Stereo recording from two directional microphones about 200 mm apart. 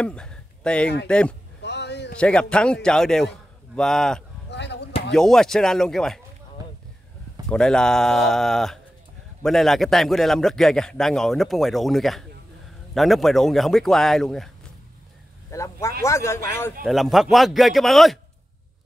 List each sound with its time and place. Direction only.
0.0 s a man's voice: 5° left (ahead or behind)
1.6 s a sound: 60° left (ahead or behind)
2.1 s a man's voice: 5° left (ahead or behind)
4.5 s a sound: 60° left (ahead or behind)
5.1 s a man's voice: centre (ahead or behind)
7.4 s a man's voice: 5° left (ahead or behind)
15.5 s a man's voice: 15° left (ahead or behind)
16.8 s a man's voice: centre (ahead or behind)